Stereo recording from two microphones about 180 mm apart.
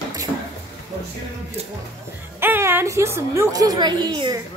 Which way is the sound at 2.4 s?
10° right (ahead or behind).